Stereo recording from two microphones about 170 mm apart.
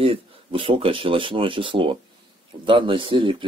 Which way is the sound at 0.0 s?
30° right (ahead or behind).